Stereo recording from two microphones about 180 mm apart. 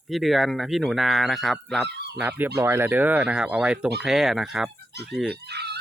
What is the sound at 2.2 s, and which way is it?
Speech, 10° right (ahead or behind).